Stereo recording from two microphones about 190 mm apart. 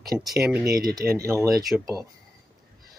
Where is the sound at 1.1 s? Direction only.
15° right (ahead or behind).